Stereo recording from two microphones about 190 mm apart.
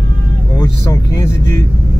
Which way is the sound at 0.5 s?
15° left (ahead or behind).